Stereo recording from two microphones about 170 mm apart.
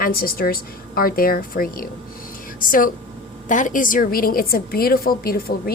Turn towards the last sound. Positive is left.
turn(degrees=60)  # may be behind; listen again after turning